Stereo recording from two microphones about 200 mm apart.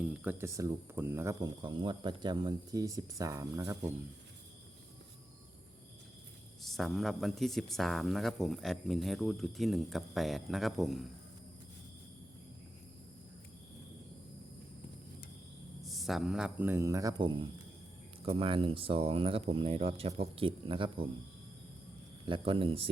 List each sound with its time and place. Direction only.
0.0 s speech: 5° right (ahead or behind)
6.6 s speech: centre (ahead or behind)
15.8 s speech: centre (ahead or behind); by 21.1 s 25° right (ahead or behind)
22.3 s speech: 25° right (ahead or behind)